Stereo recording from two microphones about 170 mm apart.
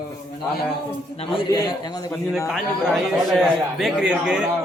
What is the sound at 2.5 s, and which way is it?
A man's voice, centre (ahead or behind).